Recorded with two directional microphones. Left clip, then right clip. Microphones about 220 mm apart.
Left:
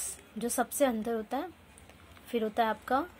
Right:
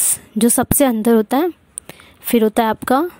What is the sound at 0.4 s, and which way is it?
A woman's voice, 50° right (ahead or behind).